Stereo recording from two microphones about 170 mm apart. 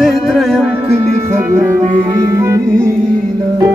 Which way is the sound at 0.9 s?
15° right (ahead or behind).